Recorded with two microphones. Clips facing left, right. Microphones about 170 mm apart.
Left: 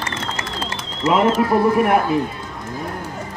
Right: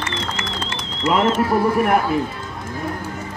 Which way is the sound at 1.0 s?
5° left (ahead or behind).